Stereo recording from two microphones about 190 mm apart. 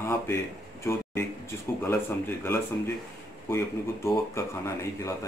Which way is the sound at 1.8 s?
10° left (ahead or behind).